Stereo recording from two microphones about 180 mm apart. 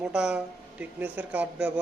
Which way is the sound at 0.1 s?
5° right (ahead or behind).